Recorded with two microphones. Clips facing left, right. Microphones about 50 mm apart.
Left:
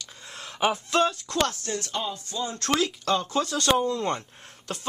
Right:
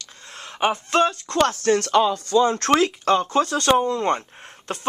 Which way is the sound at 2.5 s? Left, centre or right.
Right.